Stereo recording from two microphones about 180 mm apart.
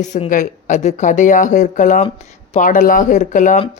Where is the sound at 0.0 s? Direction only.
40° left (ahead or behind).